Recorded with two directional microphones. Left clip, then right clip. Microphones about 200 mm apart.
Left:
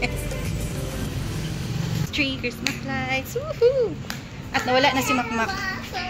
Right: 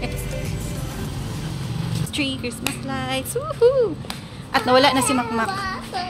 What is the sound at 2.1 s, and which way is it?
A woman's voice, 10° right (ahead or behind).